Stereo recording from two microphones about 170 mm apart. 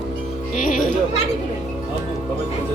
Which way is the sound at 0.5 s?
50° left (ahead or behind).